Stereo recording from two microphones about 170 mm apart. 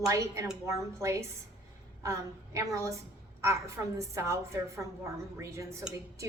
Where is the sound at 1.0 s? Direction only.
15° right (ahead or behind).